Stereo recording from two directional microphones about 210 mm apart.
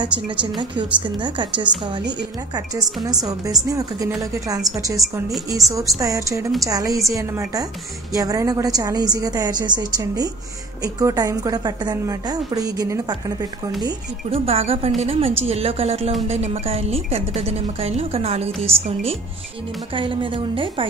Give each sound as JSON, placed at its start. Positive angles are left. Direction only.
{"t": 0.0, "sound": "a woman's voice", "side_deg": -20}